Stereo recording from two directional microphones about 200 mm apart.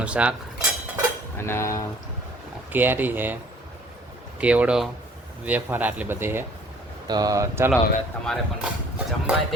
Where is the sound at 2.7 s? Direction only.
10° right (ahead or behind).